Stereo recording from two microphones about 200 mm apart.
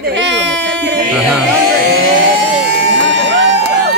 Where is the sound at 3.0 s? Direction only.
65° right (ahead or behind).